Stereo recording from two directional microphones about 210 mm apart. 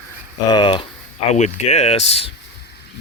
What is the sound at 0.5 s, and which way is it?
Speech, 20° left (ahead or behind).